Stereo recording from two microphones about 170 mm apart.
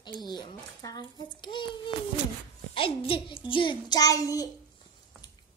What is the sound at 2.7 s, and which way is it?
A child's voice, 30° left (ahead or behind).